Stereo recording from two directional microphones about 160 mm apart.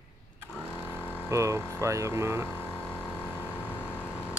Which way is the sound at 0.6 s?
10° right (ahead or behind).